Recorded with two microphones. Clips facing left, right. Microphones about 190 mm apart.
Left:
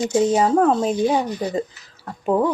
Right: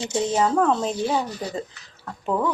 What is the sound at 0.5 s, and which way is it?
Speech, 35° left (ahead or behind).